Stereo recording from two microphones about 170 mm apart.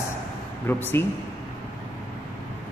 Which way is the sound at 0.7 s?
10° left (ahead or behind).